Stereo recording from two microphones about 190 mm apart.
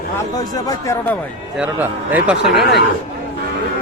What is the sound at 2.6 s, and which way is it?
Speech, 60° left (ahead or behind).